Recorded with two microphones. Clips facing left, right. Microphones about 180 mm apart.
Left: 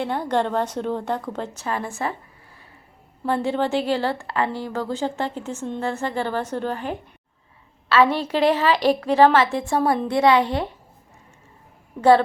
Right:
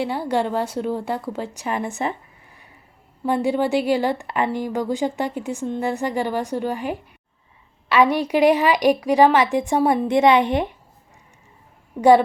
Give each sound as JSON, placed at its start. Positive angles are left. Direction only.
{"t": 0.0, "sound": "a woman's voice", "side_deg": -10}
{"t": 3.2, "sound": "a woman's voice", "side_deg": -15}
{"t": 11.9, "sound": "a woman's voice", "side_deg": -15}